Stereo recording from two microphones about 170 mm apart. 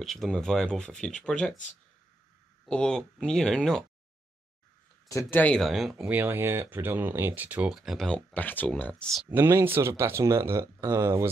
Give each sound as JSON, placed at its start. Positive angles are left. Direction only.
{"t": 0.0, "sound": "speech", "side_deg": 0}
{"t": 2.6, "sound": "speech", "side_deg": 5}
{"t": 5.0, "sound": "speech", "side_deg": 15}
{"t": 9.3, "sound": "speech", "side_deg": -15}